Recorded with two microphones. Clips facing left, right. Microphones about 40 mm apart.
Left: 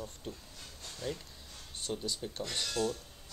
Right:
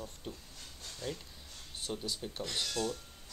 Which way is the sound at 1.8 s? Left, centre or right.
Centre.